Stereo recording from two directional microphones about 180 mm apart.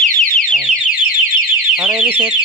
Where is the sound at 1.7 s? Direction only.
5° right (ahead or behind).